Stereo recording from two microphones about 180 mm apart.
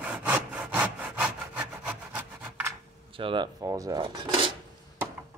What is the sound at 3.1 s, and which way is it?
Cutlery, 30° right (ahead or behind).